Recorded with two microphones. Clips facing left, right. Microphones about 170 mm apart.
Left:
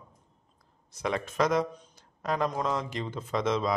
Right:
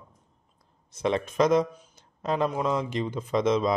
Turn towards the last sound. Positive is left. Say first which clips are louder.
# right 4 dB
turn(degrees=-20)  # may be behind; listen again after turning